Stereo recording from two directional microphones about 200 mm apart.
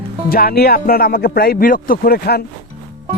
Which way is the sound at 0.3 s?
50° left (ahead or behind).